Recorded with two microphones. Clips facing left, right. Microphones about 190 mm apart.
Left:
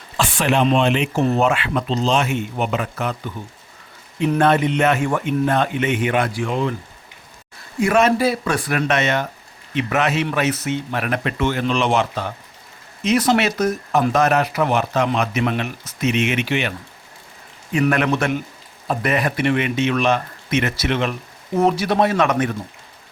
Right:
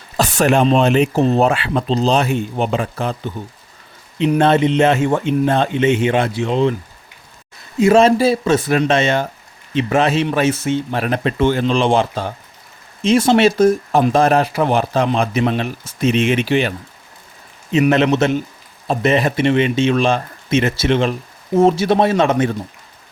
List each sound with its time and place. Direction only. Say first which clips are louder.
0.2 s speech: right 4 dB; 40° right (ahead or behind); by 6.7 s 25° right (ahead or behind)
7.8 s speech: right 5 dB; 25° right (ahead or behind)